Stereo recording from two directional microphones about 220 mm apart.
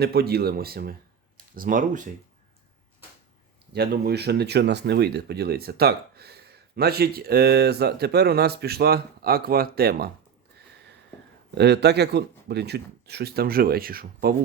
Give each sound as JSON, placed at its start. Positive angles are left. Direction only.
{"t": 0.0, "sound": "speech", "side_deg": -45}
{"t": 3.7, "sound": "speech", "side_deg": -50}
{"t": 11.5, "sound": "speech", "side_deg": -50}